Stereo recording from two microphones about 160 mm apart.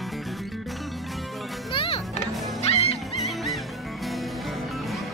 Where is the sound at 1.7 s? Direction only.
35° left (ahead or behind).